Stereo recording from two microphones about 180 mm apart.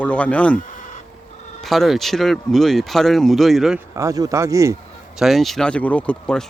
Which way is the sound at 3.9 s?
20° right (ahead or behind).